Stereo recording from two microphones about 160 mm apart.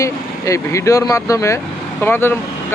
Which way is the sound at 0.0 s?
20° left (ahead or behind).